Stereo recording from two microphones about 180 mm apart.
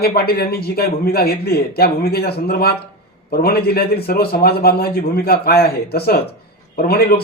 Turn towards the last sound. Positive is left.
turn(degrees=60)  # may be behind; listen again after turning